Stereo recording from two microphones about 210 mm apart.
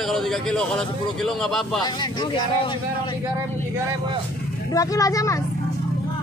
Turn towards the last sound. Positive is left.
turn(degrees=15)  # may be behind; listen again after turning